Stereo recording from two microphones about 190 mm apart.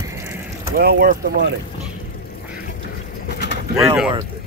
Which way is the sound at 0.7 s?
55° right (ahead or behind).